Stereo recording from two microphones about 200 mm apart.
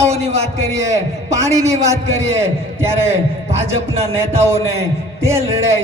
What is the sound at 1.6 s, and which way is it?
A man's voice, 15° right (ahead or behind).